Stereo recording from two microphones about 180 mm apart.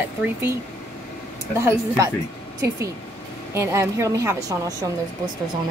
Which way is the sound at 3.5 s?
15° right (ahead or behind).